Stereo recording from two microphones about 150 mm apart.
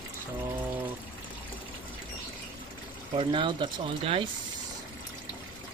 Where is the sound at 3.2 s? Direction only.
35° right (ahead or behind).